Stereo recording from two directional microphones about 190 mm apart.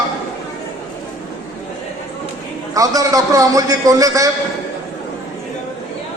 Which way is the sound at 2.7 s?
20° right (ahead or behind).